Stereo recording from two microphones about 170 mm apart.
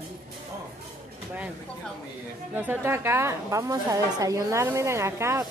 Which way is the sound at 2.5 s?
10° right (ahead or behind).